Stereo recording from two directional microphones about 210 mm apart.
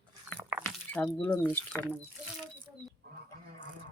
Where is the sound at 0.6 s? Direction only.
10° left (ahead or behind).